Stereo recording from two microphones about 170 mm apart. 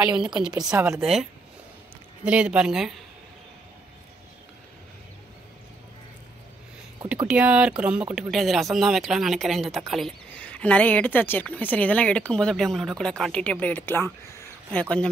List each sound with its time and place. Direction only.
0.2 s speech: 5° right (ahead or behind)
0.5 s speech: 20° right (ahead or behind)
2.2 s speech: 5° right (ahead or behind)
7.2 s speech: 10° right (ahead or behind)